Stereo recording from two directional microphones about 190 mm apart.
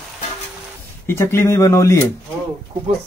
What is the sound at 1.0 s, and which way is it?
Speech, 15° left (ahead or behind).